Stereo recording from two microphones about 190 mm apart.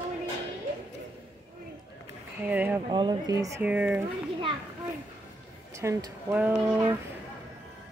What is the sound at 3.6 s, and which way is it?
Speech, 5° right (ahead or behind).